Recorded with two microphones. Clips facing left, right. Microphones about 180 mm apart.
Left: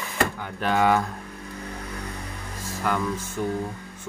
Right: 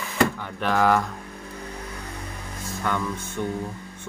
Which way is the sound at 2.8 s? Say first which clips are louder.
Left 1 dB; 5° left (ahead or behind).